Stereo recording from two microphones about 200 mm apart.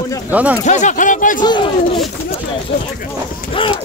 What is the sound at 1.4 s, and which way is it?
Speech, 20° left (ahead or behind).